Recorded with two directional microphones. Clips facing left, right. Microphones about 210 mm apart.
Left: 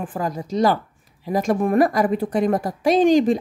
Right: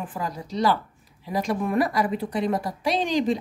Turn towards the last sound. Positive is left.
turn(degrees=50)  # may be behind; listen again after turning